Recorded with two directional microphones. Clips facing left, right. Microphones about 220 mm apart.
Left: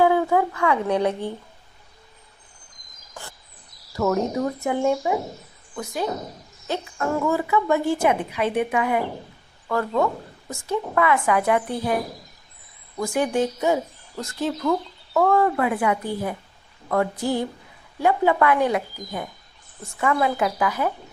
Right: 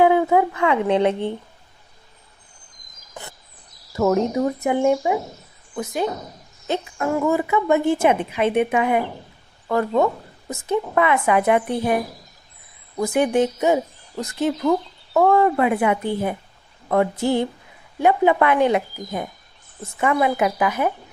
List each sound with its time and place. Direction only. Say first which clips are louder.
0.0 s a woman's voice: right 3 dB; 20° right (ahead or behind)
3.2 s bird: right 3 dB; 20° right (ahead or behind)
3.9 s speech: right 3 dB; 20° right (ahead or behind)
13.0 s speech: right 4 dB; 20° right (ahead or behind)